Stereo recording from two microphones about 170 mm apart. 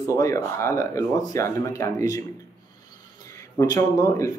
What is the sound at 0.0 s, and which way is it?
A man's voice, 20° left (ahead or behind).